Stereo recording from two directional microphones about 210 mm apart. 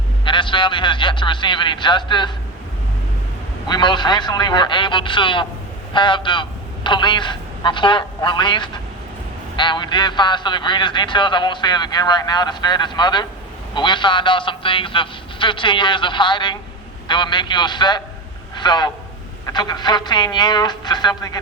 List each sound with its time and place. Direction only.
0.3 s a man's voice: 25° left (ahead or behind)
3.7 s a man's voice: 20° left (ahead or behind)